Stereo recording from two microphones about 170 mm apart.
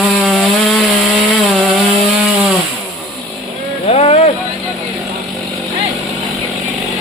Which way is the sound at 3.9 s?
35° left (ahead or behind).